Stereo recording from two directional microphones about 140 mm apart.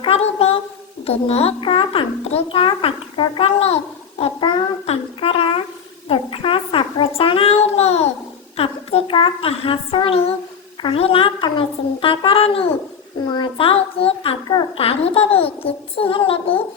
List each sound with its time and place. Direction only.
0.0 s child singing: 45° left (ahead or behind)
1.0 s a child's voice: 45° left (ahead or behind)
4.2 s babbling: 40° left (ahead or behind)
6.1 s a sound: 40° left (ahead or behind)
7.2 s child singing: 40° left (ahead or behind)
8.5 s a child's voice: 45° left (ahead or behind)